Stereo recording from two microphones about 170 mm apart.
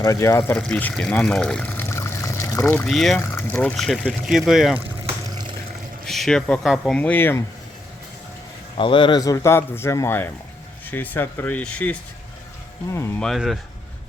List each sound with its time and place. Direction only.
0.0 s speech: 20° left (ahead or behind)
2.8 s speech: centre (ahead or behind)
3.2 s speech: 15° left (ahead or behind)
5.3 s water: 25° right (ahead or behind)
6.1 s speech: centre (ahead or behind)
8.8 s speech: 30° left (ahead or behind)
13.1 s speech: centre (ahead or behind)